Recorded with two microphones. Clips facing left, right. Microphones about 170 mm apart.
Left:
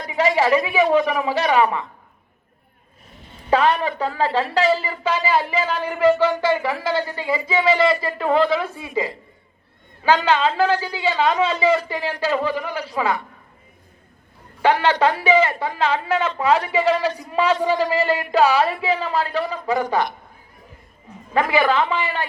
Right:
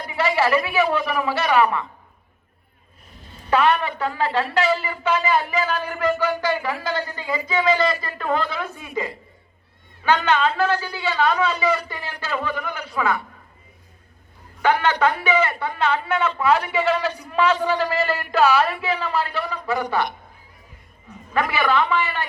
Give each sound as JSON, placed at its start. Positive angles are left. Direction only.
{"t": 0.4, "sound": "a man's voice", "side_deg": 35}
{"t": 3.5, "sound": "a man's voice", "side_deg": 35}
{"t": 14.6, "sound": "a man's voice", "side_deg": 30}
{"t": 19.6, "sound": "speech", "side_deg": 20}
{"t": 21.3, "sound": "speech", "side_deg": 25}